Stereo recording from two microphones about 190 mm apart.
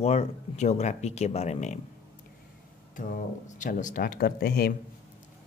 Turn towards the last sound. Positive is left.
turn(degrees=55)  # may be behind; listen again after turning